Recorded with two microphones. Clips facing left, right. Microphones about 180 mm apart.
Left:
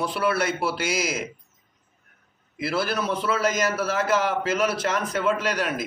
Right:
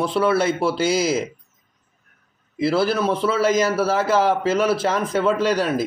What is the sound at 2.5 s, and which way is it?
A man's voice, 30° right (ahead or behind).